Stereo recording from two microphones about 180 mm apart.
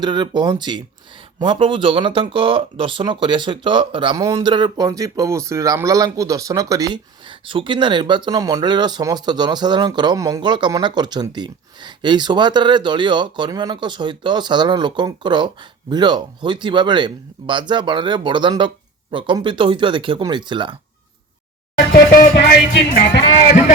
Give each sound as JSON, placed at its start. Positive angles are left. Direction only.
{"t": 0.0, "sound": "speech", "side_deg": -25}
{"t": 22.1, "sound": "music", "side_deg": 55}